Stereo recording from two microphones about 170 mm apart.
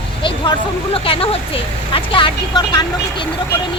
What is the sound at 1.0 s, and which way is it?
A woman's voice, 35° left (ahead or behind).